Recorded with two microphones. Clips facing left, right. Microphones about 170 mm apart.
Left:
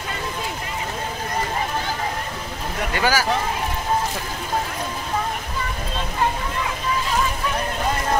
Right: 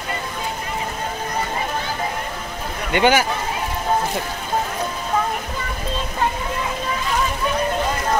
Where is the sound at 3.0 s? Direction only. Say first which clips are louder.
Right 6 dB; 20° right (ahead or behind).